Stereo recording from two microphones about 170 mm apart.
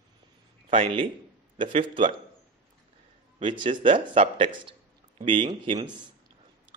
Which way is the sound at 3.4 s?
30° right (ahead or behind).